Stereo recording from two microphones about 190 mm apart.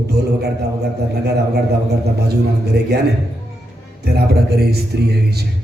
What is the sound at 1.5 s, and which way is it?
A man's voice, 60° right (ahead or behind).